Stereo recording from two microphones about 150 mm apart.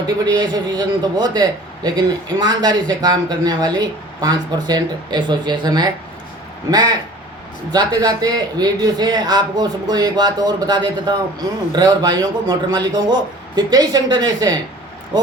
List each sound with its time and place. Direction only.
0.3 s a man's voice: 30° right (ahead or behind)